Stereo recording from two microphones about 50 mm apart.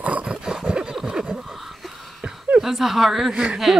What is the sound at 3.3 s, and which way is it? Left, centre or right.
Speech, right.